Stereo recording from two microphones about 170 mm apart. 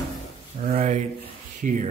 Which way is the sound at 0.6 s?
50° right (ahead or behind).